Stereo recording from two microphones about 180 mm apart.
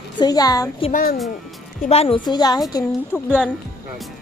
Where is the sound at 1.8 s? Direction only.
35° left (ahead or behind).